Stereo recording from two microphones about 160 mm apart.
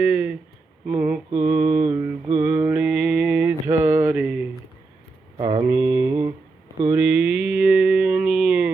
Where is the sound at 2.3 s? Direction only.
10° right (ahead or behind).